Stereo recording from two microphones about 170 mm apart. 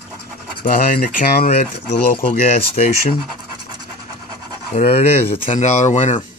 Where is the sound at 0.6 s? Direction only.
50° left (ahead or behind).